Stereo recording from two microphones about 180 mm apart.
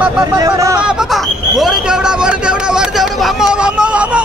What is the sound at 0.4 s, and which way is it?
Speech, 20° right (ahead or behind).